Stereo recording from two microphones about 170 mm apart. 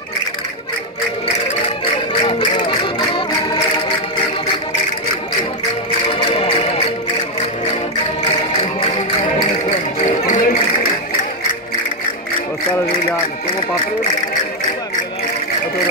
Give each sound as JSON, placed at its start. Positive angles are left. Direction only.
{"t": 2.2, "sound": "music", "side_deg": 30}
{"t": 6.1, "sound": "music", "side_deg": 30}
{"t": 10.2, "sound": "music", "side_deg": 45}